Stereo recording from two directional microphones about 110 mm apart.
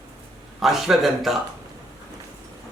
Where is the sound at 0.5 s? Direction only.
Centre (ahead or behind).